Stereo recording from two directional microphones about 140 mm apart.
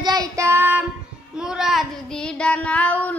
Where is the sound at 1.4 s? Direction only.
5° right (ahead or behind).